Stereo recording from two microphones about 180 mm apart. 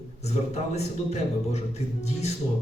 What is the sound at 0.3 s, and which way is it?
A man's voice, 35° left (ahead or behind).